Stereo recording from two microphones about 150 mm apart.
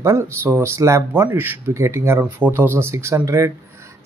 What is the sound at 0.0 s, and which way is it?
Speech, 20° right (ahead or behind).